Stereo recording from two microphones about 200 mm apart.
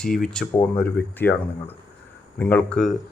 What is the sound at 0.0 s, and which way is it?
Speech, 5° left (ahead or behind).